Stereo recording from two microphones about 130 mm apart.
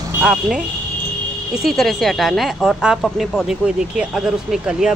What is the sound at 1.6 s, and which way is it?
Speech, centre (ahead or behind).